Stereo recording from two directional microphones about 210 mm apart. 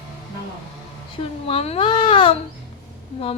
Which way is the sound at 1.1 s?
30° left (ahead or behind).